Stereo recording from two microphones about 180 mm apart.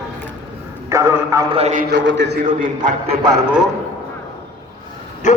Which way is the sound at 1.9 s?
80° right.